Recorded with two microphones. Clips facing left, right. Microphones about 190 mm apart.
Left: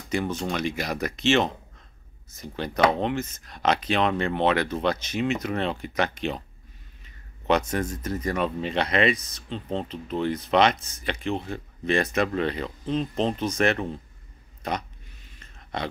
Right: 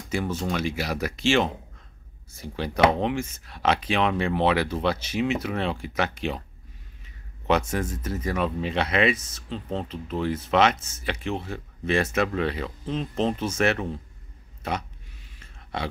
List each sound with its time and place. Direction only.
0.1 s speech: 5° right (ahead or behind)
7.4 s speech: 5° right (ahead or behind)
15.3 s a sound: 5° right (ahead or behind)